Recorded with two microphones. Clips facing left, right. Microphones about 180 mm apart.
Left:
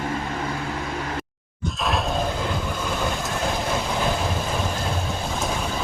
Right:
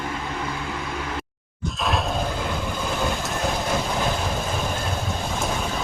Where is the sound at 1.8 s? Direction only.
Centre (ahead or behind).